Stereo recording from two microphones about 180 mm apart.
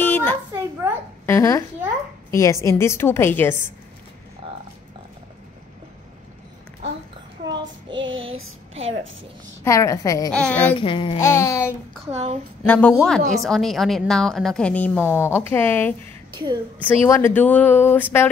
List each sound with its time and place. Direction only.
0.0 s a sound: 10° left (ahead or behind)
0.8 s a sound: 15° right (ahead or behind)
1.2 s a child's voice: 15° left (ahead or behind)
7.9 s child singing: 90° right
9.7 s speech: 15° left (ahead or behind)
10.3 s speech: 5° left (ahead or behind)
10.7 s speech: 30° left (ahead or behind)
11.1 s speech: 15° left (ahead or behind)
12.1 s speech: 35° right (ahead or behind)
12.6 s a woman's voice: 10° left (ahead or behind)
16.3 s a woman's voice: 25° right (ahead or behind)
16.8 s speech: 15° left (ahead or behind)